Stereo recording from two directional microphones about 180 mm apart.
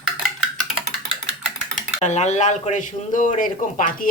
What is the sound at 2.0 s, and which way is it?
Speech, 40° left (ahead or behind).